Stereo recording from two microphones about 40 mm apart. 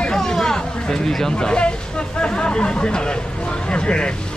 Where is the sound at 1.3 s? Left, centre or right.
Left.